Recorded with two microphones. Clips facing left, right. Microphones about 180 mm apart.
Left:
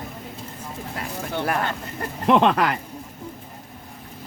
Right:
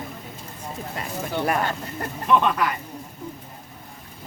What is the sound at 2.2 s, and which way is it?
Speech, 80° left.